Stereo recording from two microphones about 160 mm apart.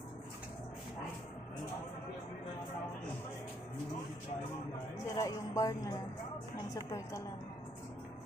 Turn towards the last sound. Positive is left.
turn(degrees=20)  # may be behind; listen again after turning